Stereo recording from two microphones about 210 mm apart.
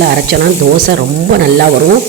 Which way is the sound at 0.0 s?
50° right (ahead or behind).